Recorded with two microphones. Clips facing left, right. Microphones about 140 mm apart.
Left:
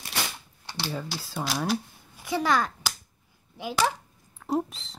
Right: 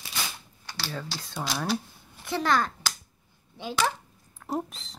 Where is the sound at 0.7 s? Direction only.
20° left (ahead or behind).